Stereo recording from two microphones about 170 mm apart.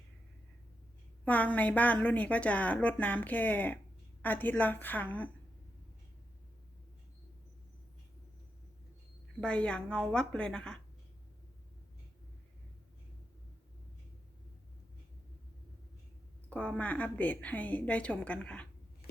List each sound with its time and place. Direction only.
1.2 s a woman's voice: 10° left (ahead or behind)
9.4 s a woman's voice: 5° left (ahead or behind)
16.5 s a woman's voice: 5° left (ahead or behind)